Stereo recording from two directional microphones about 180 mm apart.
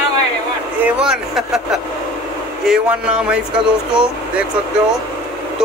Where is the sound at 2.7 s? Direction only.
5° right (ahead or behind).